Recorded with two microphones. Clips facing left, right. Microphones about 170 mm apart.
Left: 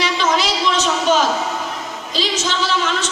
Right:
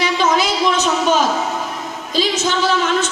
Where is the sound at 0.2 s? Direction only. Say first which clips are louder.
Right 3 dB; 50° right (ahead or behind).